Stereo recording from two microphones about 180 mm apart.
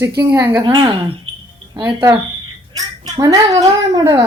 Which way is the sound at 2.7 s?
20° right (ahead or behind).